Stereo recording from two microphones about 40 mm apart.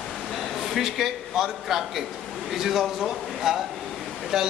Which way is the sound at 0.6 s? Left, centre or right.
Centre.